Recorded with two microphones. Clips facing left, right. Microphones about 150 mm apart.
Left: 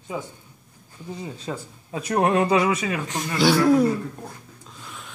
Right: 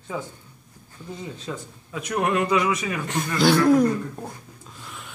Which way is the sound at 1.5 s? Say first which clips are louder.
Left 2 dB; 40° left (ahead or behind).